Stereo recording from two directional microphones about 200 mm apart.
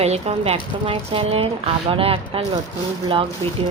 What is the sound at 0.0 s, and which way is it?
Speech, 30° right (ahead or behind).